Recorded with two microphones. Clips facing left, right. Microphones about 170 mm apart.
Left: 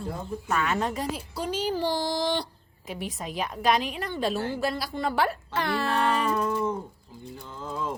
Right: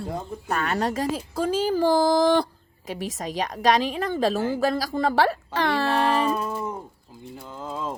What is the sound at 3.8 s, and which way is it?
A woman's voice, 40° right (ahead or behind).